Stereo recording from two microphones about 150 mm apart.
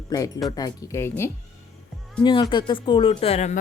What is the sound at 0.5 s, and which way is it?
Speech, 25° left (ahead or behind).